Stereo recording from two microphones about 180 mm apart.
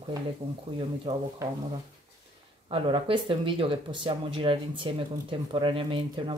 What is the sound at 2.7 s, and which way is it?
Speech, 30° right (ahead or behind).